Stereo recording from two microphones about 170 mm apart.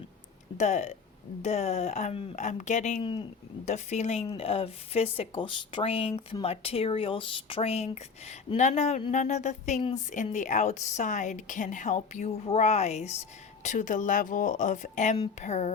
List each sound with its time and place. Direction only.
0.5 s a woman's voice: 45° left (ahead or behind)
3.0 s speech: 30° left (ahead or behind)
3.7 s a woman's voice: 45° left (ahead or behind)